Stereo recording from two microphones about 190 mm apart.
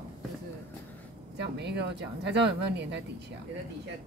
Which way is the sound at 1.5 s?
65° right (ahead or behind).